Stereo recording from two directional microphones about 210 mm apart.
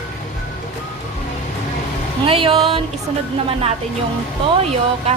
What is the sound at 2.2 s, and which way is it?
Speech, 25° right (ahead or behind).